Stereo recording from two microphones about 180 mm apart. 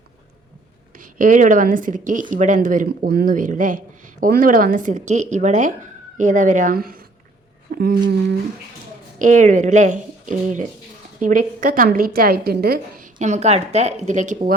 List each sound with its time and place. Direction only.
0.9 s speech: 50° right (ahead or behind)
9.1 s speech: 45° right (ahead or behind)